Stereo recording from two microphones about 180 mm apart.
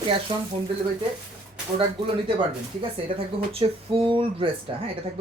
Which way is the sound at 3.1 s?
50° right (ahead or behind).